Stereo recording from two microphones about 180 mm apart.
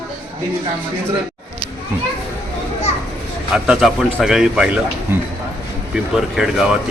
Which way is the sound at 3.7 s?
Centre (ahead or behind).